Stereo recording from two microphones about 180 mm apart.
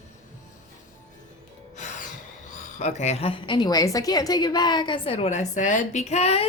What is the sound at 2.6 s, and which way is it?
A woman's voice, 40° left (ahead or behind).